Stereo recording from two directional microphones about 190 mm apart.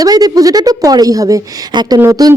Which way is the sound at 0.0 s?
20° right (ahead or behind).